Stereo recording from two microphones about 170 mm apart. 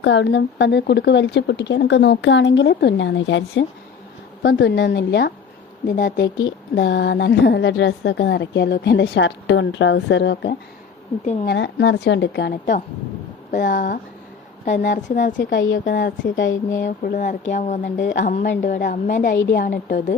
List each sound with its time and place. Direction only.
0.0 s a woman's voice: 90° left
6.0 s a woman's voice: 55° left (ahead or behind)
6.2 s a woman's voice: 90° left
13.5 s a woman's voice: 50° left (ahead or behind)